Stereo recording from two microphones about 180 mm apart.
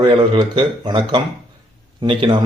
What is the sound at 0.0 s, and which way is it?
Speech, 25° right (ahead or behind).